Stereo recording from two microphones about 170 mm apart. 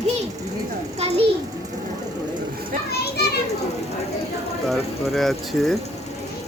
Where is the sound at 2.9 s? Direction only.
70° left (ahead or behind).